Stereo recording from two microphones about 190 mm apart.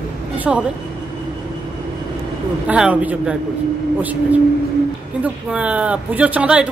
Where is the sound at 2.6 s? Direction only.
5° right (ahead or behind).